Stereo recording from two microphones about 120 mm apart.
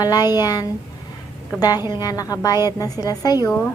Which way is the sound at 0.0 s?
30° left (ahead or behind).